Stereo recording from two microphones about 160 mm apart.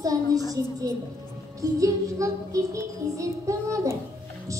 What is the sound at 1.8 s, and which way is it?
Child singing, 20° right (ahead or behind).